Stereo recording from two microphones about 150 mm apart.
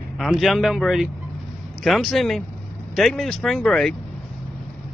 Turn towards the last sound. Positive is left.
turn(degrees=5)  # may be behind; listen again after turning